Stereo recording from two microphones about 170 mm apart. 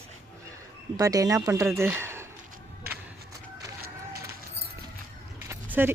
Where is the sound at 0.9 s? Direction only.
20° right (ahead or behind).